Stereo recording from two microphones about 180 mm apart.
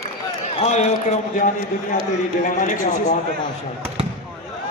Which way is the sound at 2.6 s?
45° left (ahead or behind).